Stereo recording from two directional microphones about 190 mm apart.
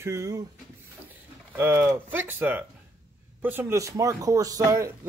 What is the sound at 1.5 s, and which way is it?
Speech, 10° right (ahead or behind).